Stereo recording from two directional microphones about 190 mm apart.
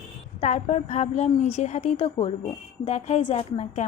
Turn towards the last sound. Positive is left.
turn(degrees=30)  # may be behind; listen again after turning